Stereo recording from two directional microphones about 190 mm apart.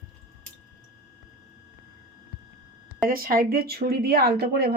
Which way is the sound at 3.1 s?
50° right (ahead or behind).